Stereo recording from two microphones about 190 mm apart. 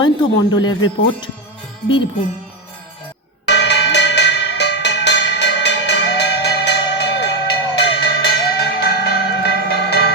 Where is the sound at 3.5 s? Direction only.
65° left (ahead or behind).